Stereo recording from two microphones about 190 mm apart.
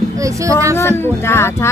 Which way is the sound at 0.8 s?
15° left (ahead or behind).